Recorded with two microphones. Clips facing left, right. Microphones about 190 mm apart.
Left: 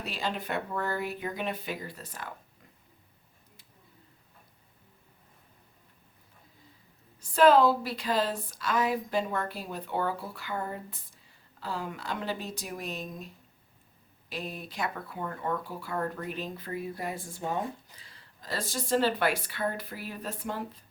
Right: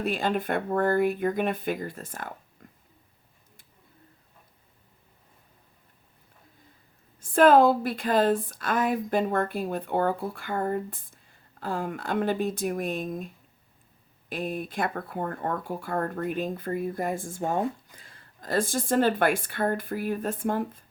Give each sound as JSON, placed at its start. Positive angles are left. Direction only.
{"t": 0.0, "sound": "speech", "side_deg": -50}
{"t": 7.2, "sound": "speech", "side_deg": -50}